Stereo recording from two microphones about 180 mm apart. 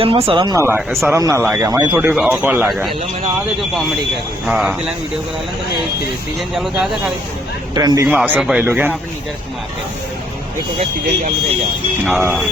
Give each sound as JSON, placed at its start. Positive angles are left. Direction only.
{"t": 0.0, "sound": "speech", "side_deg": -30}
{"t": 4.4, "sound": "speech", "side_deg": 0}
{"t": 6.5, "sound": "speech", "side_deg": 0}
{"t": 7.7, "sound": "speech", "side_deg": -20}
{"t": 8.0, "sound": "speech", "side_deg": -10}
{"t": 12.0, "sound": "speech", "side_deg": -10}